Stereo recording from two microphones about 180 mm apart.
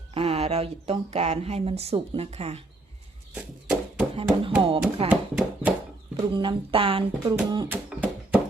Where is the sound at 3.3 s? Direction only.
5° right (ahead or behind).